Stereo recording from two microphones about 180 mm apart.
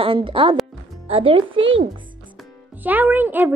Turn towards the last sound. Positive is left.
turn(degrees=-10)  # may be behind; listen again after turning